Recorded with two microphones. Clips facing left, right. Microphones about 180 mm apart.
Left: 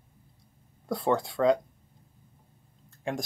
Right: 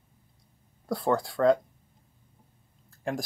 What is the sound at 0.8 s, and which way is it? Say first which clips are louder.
Speech: even; centre (ahead or behind).